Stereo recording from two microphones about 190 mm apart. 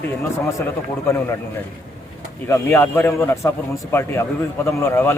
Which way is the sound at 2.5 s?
15° left (ahead or behind).